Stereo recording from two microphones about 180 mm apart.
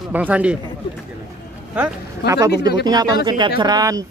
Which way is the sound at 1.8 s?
20° right (ahead or behind).